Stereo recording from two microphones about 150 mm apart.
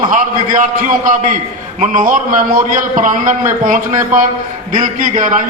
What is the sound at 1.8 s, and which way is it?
A man's voice, 60° right (ahead or behind).